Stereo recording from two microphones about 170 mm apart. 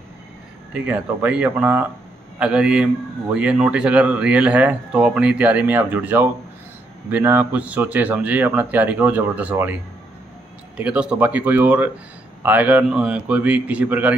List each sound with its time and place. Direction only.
0.7 s a man's voice: 10° right (ahead or behind)
10.8 s a man's voice: 5° right (ahead or behind)